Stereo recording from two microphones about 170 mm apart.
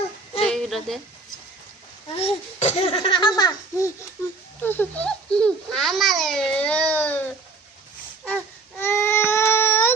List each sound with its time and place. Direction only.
0.4 s a sound: centre (ahead or behind)
2.1 s a child's voice: 40° left (ahead or behind); by 3.8 s 25° left (ahead or behind)
4.6 s a child's voice: 10° left (ahead or behind)
8.8 s baby cry: 15° left (ahead or behind)